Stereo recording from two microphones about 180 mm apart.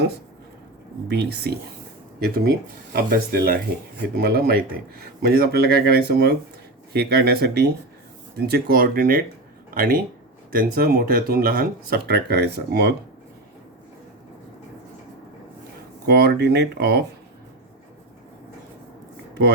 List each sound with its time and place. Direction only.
1.0 s speech: 65° right (ahead or behind)
2.9 s speech: 55° right (ahead or behind)
16.0 s speech: 65° right (ahead or behind)
19.3 s a sound: 70° right (ahead or behind)